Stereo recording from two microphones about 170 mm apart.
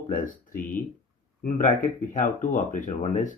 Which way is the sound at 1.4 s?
50° left (ahead or behind).